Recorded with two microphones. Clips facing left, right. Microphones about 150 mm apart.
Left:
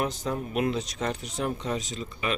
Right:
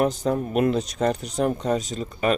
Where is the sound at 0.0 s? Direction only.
45° right (ahead or behind).